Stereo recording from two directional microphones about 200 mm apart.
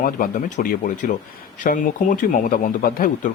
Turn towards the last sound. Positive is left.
turn(degrees=45)  # may be behind; listen again after turning